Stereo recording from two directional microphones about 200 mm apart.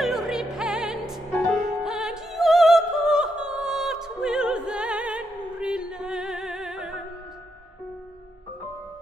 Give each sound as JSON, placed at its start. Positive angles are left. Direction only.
{"t": 0.0, "sound": "music", "side_deg": 0}